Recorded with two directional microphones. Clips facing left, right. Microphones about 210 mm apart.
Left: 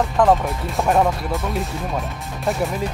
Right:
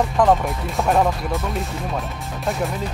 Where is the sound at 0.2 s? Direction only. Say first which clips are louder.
Left 1 dB; centre (ahead or behind).